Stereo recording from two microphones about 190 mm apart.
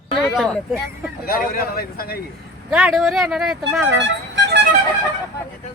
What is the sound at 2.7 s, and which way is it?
Speech, 5° right (ahead or behind).